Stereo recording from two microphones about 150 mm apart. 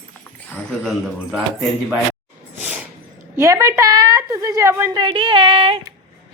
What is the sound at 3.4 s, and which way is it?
A woman's voice, 20° right (ahead or behind).